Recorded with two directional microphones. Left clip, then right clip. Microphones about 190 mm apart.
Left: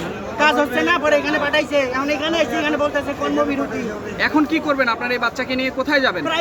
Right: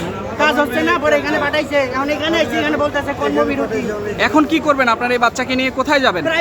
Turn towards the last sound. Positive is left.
turn(degrees=-25)  # may be behind; listen again after turning